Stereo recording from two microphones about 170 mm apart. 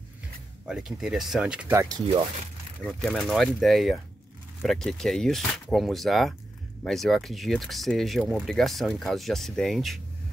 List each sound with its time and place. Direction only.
0.7 s speech: 5° right (ahead or behind)
1.8 s speech: 20° right (ahead or behind)
2.8 s speech: 5° left (ahead or behind)